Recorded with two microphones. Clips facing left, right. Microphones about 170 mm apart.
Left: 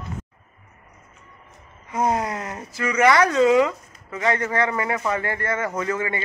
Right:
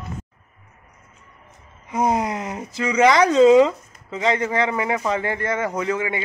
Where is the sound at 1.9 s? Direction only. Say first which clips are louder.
Right 2 dB; 15° right (ahead or behind).